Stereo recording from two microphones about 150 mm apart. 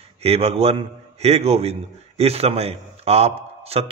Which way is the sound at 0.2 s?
45° right (ahead or behind).